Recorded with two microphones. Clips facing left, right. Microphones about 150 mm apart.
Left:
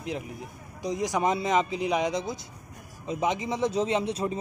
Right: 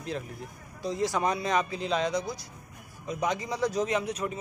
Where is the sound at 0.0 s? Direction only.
15° left (ahead or behind).